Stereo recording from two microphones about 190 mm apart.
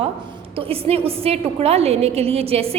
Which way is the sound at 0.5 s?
30° right (ahead or behind).